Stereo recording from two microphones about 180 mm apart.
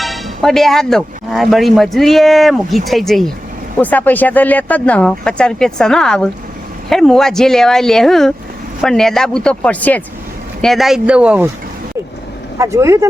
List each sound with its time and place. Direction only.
0.0 s speech: centre (ahead or behind)
12.5 s speech: 15° right (ahead or behind)